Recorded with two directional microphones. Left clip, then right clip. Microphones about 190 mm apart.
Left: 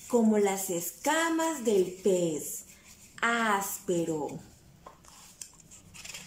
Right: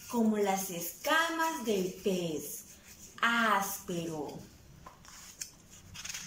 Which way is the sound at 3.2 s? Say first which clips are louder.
Left 1 dB; 30° left (ahead or behind).